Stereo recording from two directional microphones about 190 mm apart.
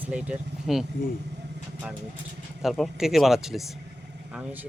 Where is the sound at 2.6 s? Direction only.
Centre (ahead or behind).